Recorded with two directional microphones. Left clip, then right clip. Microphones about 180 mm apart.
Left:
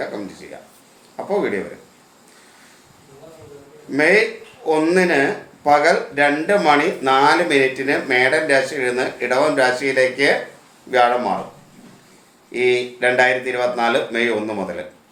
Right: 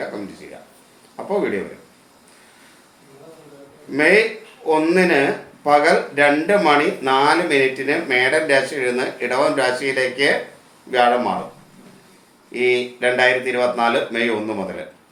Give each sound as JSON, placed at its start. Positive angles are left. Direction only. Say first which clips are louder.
{"t": 1.1, "sound": "speech", "louder": "left 1 dB", "side_deg": 15}
{"t": 3.9, "sound": "speech", "louder": "even", "side_deg": 15}
{"t": 12.5, "sound": "speech", "louder": "left 1 dB", "side_deg": 15}